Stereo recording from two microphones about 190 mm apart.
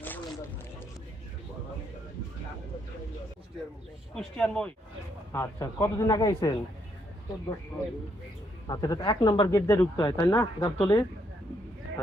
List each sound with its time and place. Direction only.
4.1 s a man's voice: 5° left (ahead or behind); by 6.6 s 20° left (ahead or behind)
8.6 s speech: 20° left (ahead or behind)